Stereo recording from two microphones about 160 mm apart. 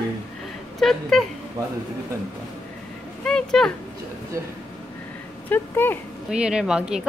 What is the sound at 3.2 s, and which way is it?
Speech, 5° left (ahead or behind).